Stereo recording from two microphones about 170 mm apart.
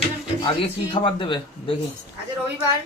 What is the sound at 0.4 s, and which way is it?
A man's voice, 30° left (ahead or behind).